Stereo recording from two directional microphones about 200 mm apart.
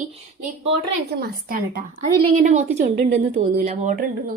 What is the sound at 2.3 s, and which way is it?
A woman's voice, 35° right (ahead or behind).